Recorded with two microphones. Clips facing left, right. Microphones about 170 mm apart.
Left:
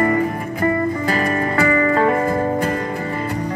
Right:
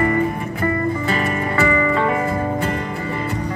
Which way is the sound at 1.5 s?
40° left (ahead or behind).